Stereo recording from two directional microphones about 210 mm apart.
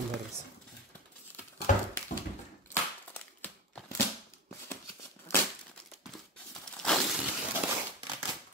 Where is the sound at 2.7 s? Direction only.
5° left (ahead or behind).